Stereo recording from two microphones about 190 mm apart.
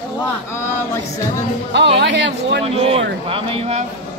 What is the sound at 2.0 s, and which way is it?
Speech, 65° right (ahead or behind).